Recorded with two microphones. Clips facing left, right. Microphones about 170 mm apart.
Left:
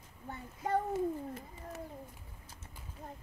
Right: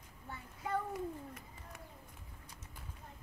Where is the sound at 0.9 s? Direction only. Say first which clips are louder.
Left 7 dB; 30° left (ahead or behind).